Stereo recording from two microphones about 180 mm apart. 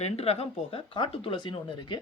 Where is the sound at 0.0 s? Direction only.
35° left (ahead or behind).